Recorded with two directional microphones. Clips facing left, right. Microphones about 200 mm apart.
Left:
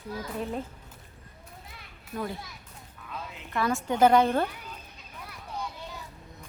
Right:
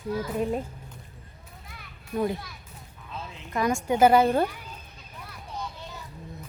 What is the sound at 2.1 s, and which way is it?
Speech, 20° right (ahead or behind).